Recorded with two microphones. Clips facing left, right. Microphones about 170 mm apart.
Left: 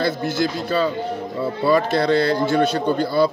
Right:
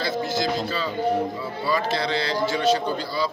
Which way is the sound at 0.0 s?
60° left (ahead or behind).